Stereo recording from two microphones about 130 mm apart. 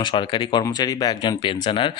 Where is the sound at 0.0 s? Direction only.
40° left (ahead or behind).